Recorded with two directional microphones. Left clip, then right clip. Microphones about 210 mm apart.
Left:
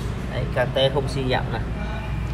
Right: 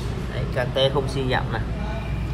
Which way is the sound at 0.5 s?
Centre (ahead or behind).